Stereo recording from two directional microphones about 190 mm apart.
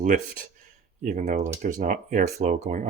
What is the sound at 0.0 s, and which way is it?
Speech, 40° right (ahead or behind).